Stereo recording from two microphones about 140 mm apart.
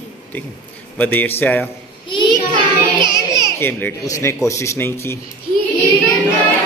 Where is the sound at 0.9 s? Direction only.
10° left (ahead or behind).